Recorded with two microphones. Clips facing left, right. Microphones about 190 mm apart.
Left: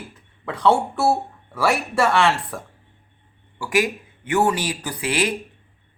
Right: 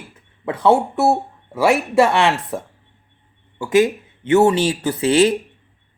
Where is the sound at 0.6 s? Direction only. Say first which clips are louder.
Right 3 dB; 20° right (ahead or behind).